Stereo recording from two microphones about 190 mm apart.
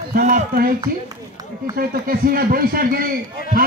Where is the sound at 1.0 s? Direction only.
20° right (ahead or behind).